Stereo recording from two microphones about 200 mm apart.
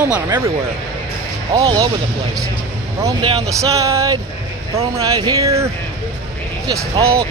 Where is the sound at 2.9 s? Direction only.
20° right (ahead or behind).